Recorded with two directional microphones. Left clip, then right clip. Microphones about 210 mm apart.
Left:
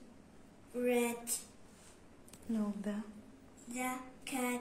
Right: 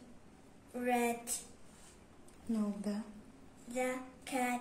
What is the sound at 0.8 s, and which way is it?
Speech, 15° right (ahead or behind).